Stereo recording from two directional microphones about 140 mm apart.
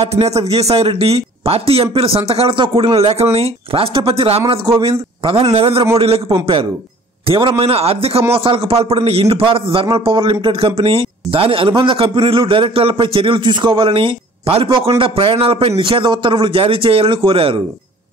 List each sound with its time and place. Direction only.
0.0 s a man's voice: 50° right (ahead or behind)